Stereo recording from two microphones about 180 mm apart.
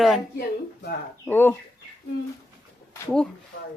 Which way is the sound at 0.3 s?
60° left (ahead or behind).